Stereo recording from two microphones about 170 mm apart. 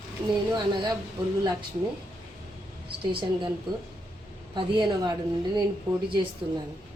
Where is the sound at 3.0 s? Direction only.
30° right (ahead or behind).